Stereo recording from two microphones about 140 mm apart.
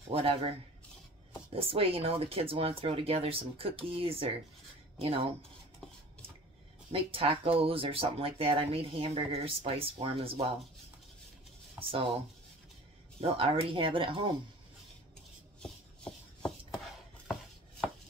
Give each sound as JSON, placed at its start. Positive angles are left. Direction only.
{"t": 0.1, "sound": "speech", "side_deg": -40}
{"t": 1.5, "sound": "speech", "side_deg": -40}
{"t": 6.9, "sound": "speech", "side_deg": -40}
{"t": 11.8, "sound": "speech", "side_deg": -40}
{"t": 13.2, "sound": "speech", "side_deg": -40}
{"t": 15.6, "sound": "a sound", "side_deg": 5}